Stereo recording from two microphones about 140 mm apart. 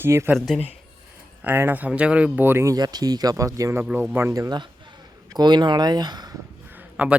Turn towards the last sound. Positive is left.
turn(degrees=-10)  # may be behind; listen again after turning